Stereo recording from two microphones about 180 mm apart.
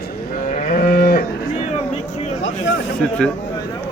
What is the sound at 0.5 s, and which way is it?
Livestock, 50° left (ahead or behind).